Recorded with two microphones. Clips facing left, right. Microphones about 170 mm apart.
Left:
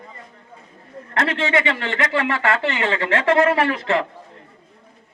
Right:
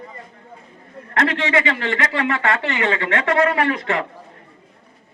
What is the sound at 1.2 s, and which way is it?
Speech, 30° left (ahead or behind).